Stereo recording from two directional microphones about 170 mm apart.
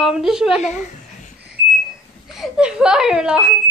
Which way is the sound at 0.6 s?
45° left (ahead or behind).